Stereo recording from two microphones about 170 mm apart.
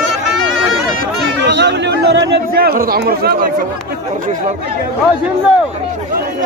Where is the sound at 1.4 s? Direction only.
90° right.